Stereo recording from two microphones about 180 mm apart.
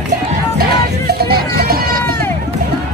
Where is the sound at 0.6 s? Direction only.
60° right (ahead or behind).